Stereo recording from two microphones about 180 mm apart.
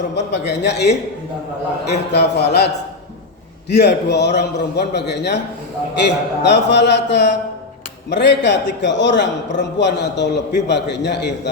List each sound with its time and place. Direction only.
0.2 s a man's voice: 70° left (ahead or behind)
1.9 s a man's voice: 65° left (ahead or behind)
3.7 s a man's voice: 65° left (ahead or behind)
6.4 s a man's voice: 70° left (ahead or behind)